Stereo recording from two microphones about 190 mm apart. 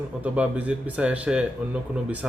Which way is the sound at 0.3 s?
5° right (ahead or behind).